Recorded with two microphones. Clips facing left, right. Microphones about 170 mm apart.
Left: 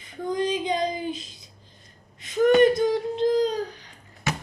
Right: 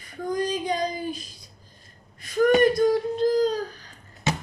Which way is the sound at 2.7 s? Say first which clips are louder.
Right 2 dB; 20° left (ahead or behind).